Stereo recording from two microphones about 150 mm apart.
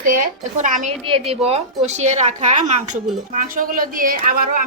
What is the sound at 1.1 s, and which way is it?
A woman's voice, 40° right (ahead or behind).